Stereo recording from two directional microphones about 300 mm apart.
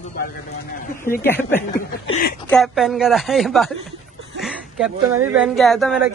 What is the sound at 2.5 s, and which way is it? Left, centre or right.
A woman's voice, centre.